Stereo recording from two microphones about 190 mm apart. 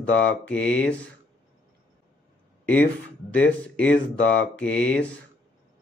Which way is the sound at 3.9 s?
90° left.